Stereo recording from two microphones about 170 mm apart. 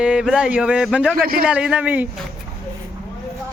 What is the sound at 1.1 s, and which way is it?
Speech, 60° right (ahead or behind).